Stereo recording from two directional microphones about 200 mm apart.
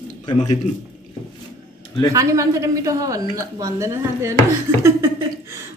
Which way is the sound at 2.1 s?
15° right (ahead or behind).